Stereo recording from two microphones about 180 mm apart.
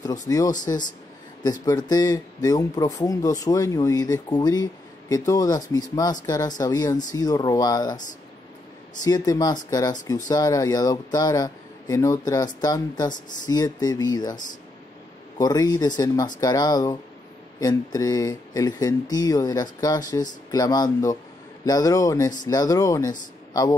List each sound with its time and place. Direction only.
0.3 s speech: 20° left (ahead or behind)
9.0 s speech: 20° left (ahead or behind)